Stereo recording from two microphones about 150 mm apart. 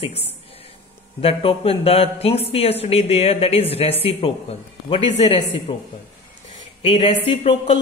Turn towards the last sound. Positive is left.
turn(degrees=40)  # may be behind; listen again after turning